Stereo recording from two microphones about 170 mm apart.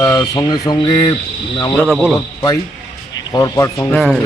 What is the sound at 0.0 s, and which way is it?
Speech, 25° left (ahead or behind).